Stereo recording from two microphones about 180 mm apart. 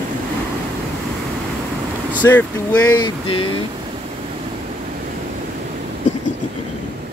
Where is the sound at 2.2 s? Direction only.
10° left (ahead or behind).